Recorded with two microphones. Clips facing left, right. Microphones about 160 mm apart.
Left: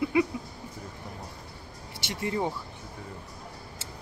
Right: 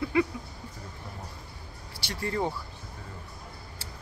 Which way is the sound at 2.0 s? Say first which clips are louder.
Left 1 dB; 20° left (ahead or behind).